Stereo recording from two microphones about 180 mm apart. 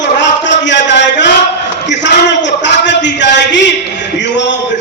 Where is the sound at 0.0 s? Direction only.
80° left.